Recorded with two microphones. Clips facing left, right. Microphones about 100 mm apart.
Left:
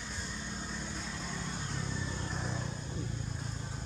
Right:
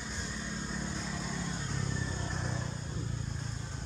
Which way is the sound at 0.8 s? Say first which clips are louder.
Right 3 dB; centre (ahead or behind).